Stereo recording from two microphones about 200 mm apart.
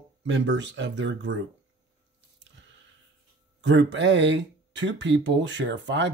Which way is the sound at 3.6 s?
65° right (ahead or behind).